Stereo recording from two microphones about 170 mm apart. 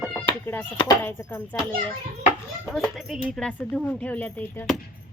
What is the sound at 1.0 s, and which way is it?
Speech, 15° left (ahead or behind).